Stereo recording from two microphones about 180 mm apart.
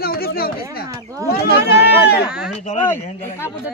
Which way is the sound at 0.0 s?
55° left (ahead or behind).